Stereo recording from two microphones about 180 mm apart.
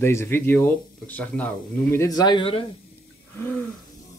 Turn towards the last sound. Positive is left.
turn(degrees=10)  # may be behind; listen again after turning